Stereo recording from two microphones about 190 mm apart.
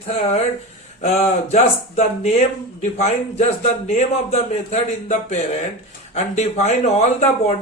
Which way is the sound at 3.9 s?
35° left (ahead or behind).